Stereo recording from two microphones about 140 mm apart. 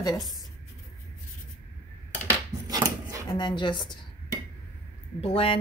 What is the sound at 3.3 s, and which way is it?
Speech, 35° left (ahead or behind).